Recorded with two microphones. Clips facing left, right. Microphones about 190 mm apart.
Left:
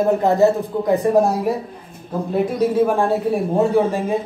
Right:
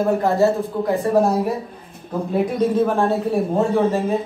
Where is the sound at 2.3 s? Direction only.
5° left (ahead or behind).